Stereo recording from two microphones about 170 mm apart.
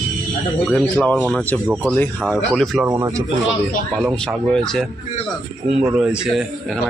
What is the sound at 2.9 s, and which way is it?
Speech, 20° right (ahead or behind).